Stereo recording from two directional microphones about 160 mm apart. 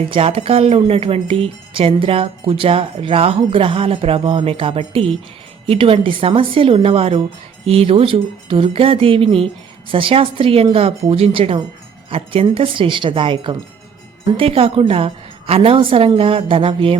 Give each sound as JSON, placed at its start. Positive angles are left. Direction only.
{"t": 0.1, "sound": "speech", "side_deg": -35}